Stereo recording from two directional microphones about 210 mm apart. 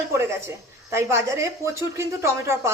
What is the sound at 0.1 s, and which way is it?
A woman's voice, 15° right (ahead or behind).